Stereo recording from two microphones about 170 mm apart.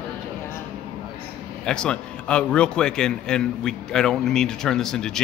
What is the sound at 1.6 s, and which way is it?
A man's voice, 5° left (ahead or behind).